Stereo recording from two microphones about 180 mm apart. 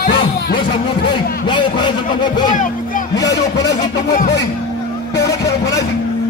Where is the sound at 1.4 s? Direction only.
25° left (ahead or behind).